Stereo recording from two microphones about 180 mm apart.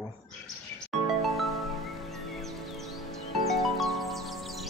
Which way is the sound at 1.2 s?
Centre (ahead or behind).